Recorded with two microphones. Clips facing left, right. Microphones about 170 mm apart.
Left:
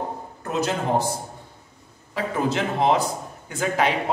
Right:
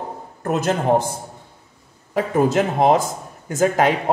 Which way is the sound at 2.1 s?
45° right (ahead or behind).